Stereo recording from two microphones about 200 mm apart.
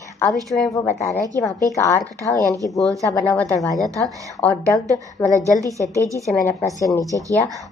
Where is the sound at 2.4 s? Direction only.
15° right (ahead or behind).